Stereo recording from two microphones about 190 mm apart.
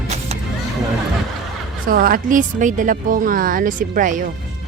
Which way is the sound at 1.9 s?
50° right (ahead or behind).